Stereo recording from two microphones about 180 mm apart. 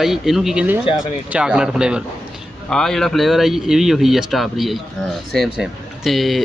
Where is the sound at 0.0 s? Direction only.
Centre (ahead or behind).